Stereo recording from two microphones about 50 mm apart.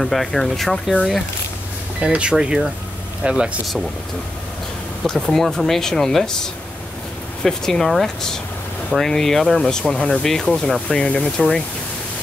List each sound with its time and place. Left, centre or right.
0.0 s speech: centre
2.0 s speech: right
5.0 s speech: centre